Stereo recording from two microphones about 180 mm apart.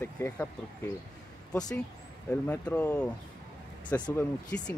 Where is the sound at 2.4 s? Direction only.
10° left (ahead or behind).